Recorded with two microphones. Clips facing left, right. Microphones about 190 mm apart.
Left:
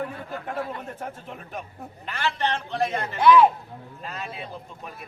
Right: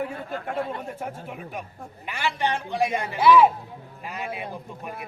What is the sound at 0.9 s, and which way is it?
A woman's voice, 10° right (ahead or behind).